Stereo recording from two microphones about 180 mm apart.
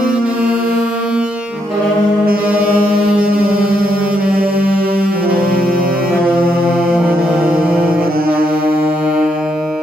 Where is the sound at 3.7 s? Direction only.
55° right (ahead or behind).